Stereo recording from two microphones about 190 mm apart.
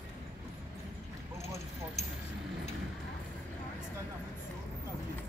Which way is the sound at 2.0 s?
35° left (ahead or behind).